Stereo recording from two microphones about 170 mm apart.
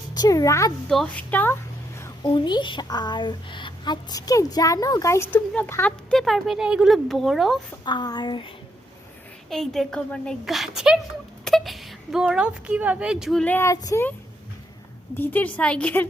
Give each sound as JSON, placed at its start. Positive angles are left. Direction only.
{"t": 0.1, "sound": "speech", "side_deg": 20}
{"t": 0.9, "sound": "a woman's voice", "side_deg": 5}
{"t": 2.0, "sound": "a sound", "side_deg": 15}
{"t": 2.3, "sound": "a woman's voice", "side_deg": 25}
{"t": 7.9, "sound": "a sound", "side_deg": 25}
{"t": 9.5, "sound": "a woman's voice", "side_deg": 0}
{"t": 13.4, "sound": "a woman's voice", "side_deg": 10}
{"t": 15.1, "sound": "a woman's voice", "side_deg": 10}